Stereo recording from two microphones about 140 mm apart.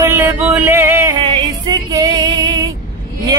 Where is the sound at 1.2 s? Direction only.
30° right (ahead or behind).